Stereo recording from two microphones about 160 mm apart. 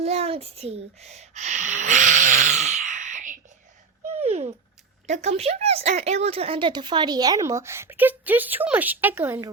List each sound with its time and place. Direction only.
0.0 s speech: 40° right (ahead or behind)
4.2 s a sound: 40° right (ahead or behind)
5.0 s a woman's voice: 45° right (ahead or behind); by 9.5 s 15° right (ahead or behind)